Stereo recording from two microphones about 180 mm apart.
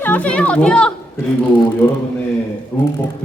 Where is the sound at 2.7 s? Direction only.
10° left (ahead or behind).